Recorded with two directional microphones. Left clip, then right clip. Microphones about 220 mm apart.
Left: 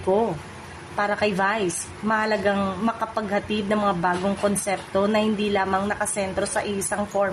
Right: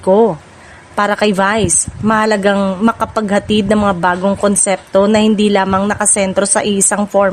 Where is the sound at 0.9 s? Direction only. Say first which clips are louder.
Right 10 dB; 45° right (ahead or behind).